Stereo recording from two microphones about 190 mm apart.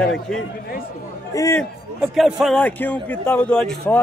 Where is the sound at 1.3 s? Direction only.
15° left (ahead or behind).